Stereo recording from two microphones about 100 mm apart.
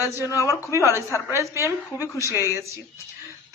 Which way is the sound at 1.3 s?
25° right (ahead or behind).